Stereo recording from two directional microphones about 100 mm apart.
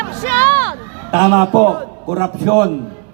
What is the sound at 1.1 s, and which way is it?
A man's voice, 25° right (ahead or behind).